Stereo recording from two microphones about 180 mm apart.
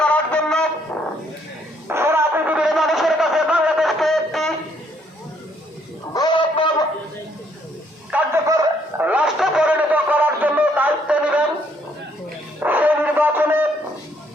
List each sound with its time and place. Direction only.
0.0 s music: 5° left (ahead or behind)
1.9 s music: 15° right (ahead or behind); by 4.5 s centre (ahead or behind)
6.1 s music: 25° left (ahead or behind)
8.1 s a sound: 15° right (ahead or behind)
12.5 s music: 10° right (ahead or behind)